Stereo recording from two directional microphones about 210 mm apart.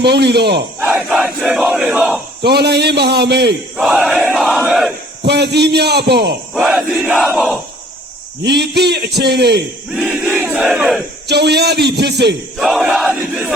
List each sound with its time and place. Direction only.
0.0 s a man's voice: 50° right (ahead or behind)
0.8 s battle cry: 10° right (ahead or behind)
2.4 s a man's voice: 50° right (ahead or behind)
3.8 s battle cry: 5° right (ahead or behind)
4.3 s battle cry: 5° left (ahead or behind)
5.2 s a man's voice: 50° right (ahead or behind)
6.5 s crowd: centre (ahead or behind)
7.2 s battle cry: centre (ahead or behind)
8.4 s a man's voice: 50° right (ahead or behind)
9.9 s battle cry: 5° right (ahead or behind)
11.3 s a man's voice: 50° right (ahead or behind)
12.5 s crowd: centre (ahead or behind)